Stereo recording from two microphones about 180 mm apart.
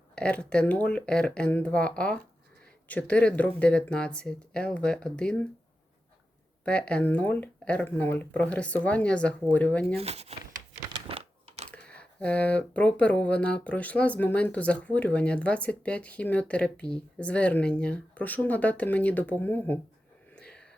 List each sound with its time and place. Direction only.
0.2 s speech: 5° left (ahead or behind)
6.7 s speech: 5° left (ahead or behind)
9.8 s speech: 35° right (ahead or behind)
11.1 s typing: 35° right (ahead or behind)
11.7 s speech: 5° left (ahead or behind)
20.3 s whispering: 5° left (ahead or behind)